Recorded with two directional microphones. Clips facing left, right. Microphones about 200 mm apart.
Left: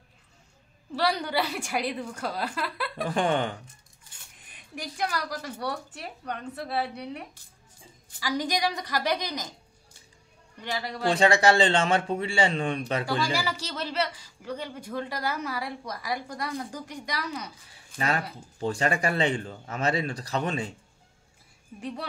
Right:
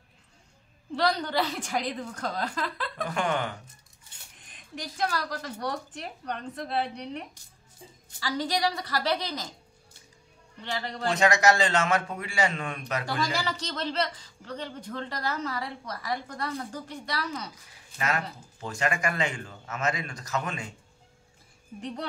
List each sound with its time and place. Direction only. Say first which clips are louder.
0.9 s speech: even; 10° left (ahead or behind)
3.1 s a man's voice: left 4 dB; 30° left (ahead or behind)
4.5 s speech: left 1 dB; 10° left (ahead or behind)
10.6 s speech: left 1 dB; 10° left (ahead or behind)
11.1 s a man's voice: left 2 dB; 30° left (ahead or behind)
13.2 s speech: left 1 dB; 10° left (ahead or behind)
17.9 s speech: left 2 dB; 35° left (ahead or behind)